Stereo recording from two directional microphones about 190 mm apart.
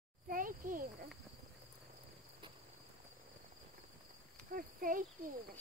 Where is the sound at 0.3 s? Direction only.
45° right (ahead or behind).